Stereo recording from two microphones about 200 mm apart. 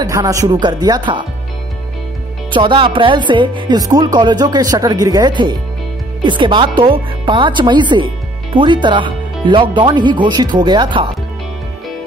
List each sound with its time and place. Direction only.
0.0 s speech: 15° right (ahead or behind)
2.5 s speech: 25° right (ahead or behind)